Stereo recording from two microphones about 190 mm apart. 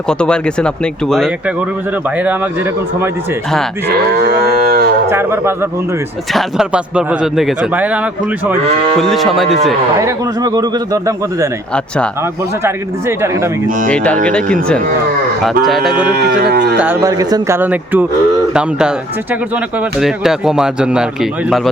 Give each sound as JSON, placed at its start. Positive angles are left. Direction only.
{"t": 0.1, "sound": "speech", "side_deg": 5}
{"t": 3.8, "sound": "moo", "side_deg": -60}
{"t": 5.0, "sound": "a man's voice", "side_deg": -15}
{"t": 9.0, "sound": "speech", "side_deg": 0}
{"t": 10.0, "sound": "a man's voice", "side_deg": -20}
{"t": 12.6, "sound": "a man's voice", "side_deg": -15}
{"t": 13.9, "sound": "speech", "side_deg": 5}
{"t": 15.4, "sound": "speech", "side_deg": 0}
{"t": 16.1, "sound": "moo", "side_deg": -60}
{"t": 16.7, "sound": "a man's voice", "side_deg": -10}
{"t": 20.0, "sound": "speech", "side_deg": 0}